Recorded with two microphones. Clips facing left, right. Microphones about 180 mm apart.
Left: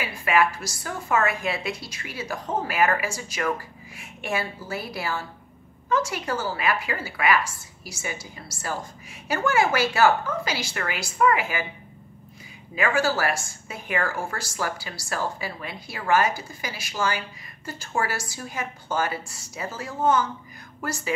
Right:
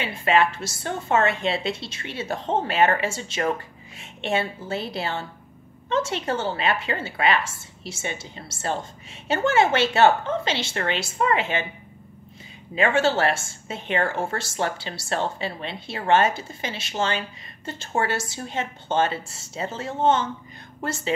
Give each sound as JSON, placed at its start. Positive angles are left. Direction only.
{"t": 0.0, "sound": "a woman's voice", "side_deg": -25}
{"t": 12.7, "sound": "a woman's voice", "side_deg": -25}